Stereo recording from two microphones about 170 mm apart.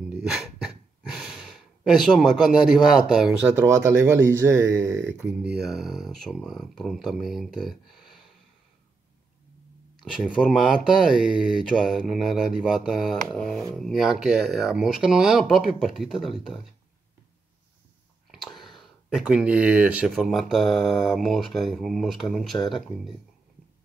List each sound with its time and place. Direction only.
0.1 s a sound: 5° right (ahead or behind)
3.6 s speech: 15° right (ahead or behind)
5.1 s speech: 5° right (ahead or behind)
9.9 s speech: centre (ahead or behind)
18.6 s speech: centre (ahead or behind)